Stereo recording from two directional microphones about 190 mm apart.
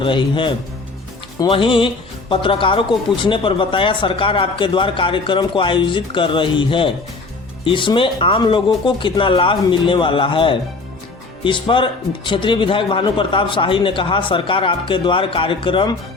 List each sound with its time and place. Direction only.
0.0 s speech: 25° left (ahead or behind)